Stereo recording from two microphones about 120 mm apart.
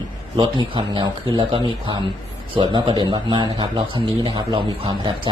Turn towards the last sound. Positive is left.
turn(degrees=-40)  # may be behind; listen again after turning